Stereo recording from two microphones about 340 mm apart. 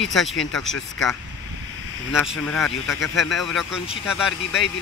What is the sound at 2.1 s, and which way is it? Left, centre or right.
Speech, centre.